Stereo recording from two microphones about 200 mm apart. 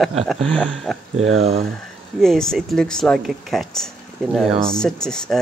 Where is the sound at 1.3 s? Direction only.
30° right (ahead or behind).